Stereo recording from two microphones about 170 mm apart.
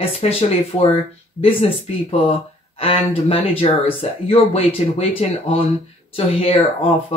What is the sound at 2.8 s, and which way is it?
Speech, 35° left (ahead or behind).